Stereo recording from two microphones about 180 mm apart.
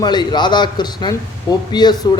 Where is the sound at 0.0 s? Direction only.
25° left (ahead or behind).